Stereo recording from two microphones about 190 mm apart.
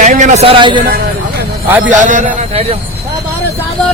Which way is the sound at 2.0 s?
40° right (ahead or behind).